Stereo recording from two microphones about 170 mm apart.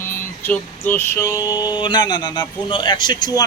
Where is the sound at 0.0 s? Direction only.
10° left (ahead or behind).